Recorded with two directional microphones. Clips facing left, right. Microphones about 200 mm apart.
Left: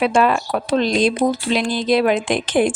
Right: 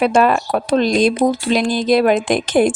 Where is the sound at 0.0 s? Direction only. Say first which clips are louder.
Right 2 dB; 45° right (ahead or behind).